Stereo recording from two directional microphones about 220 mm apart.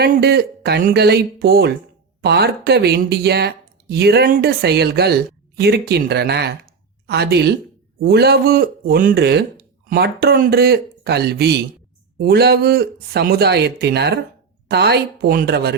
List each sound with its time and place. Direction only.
0.0 s speech: 45° right (ahead or behind)